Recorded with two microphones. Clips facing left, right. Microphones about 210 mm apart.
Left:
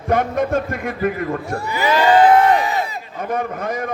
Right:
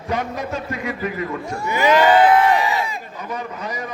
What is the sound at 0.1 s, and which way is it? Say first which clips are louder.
A man's voice: left 7 dB; 55° left (ahead or behind).